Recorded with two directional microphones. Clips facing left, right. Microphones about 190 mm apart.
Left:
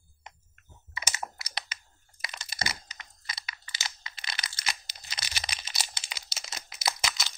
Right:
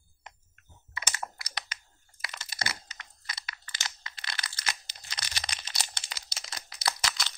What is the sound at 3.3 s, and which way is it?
Crunch, 10° left (ahead or behind).